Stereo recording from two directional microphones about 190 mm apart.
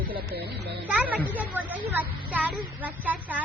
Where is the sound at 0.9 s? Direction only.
5° right (ahead or behind).